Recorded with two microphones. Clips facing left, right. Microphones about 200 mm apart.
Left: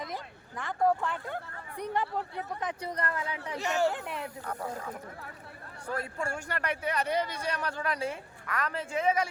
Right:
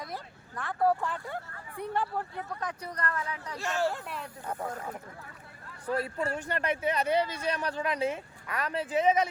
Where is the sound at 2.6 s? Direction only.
30° left (ahead or behind).